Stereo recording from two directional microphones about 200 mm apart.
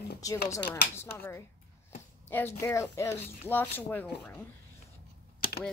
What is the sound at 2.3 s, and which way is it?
A child's voice, 10° left (ahead or behind).